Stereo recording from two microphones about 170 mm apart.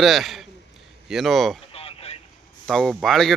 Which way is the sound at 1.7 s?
35° left (ahead or behind).